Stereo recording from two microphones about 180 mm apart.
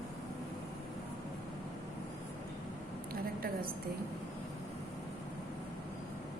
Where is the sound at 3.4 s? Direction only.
55° right (ahead or behind).